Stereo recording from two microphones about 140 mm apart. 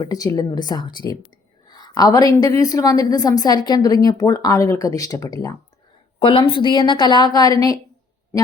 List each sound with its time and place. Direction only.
0.0 s a woman's voice: 25° left (ahead or behind)
6.1 s a woman's voice: 40° left (ahead or behind); by 7.8 s 25° left (ahead or behind)